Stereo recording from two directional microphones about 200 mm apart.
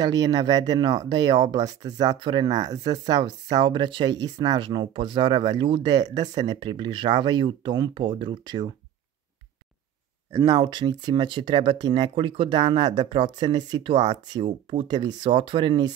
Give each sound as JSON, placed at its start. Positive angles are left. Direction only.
{"t": 0.0, "sound": "speech", "side_deg": -20}
{"t": 10.3, "sound": "speech", "side_deg": -20}